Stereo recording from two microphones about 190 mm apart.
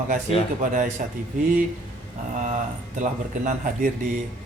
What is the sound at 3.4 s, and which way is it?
Speech, 45° right (ahead or behind).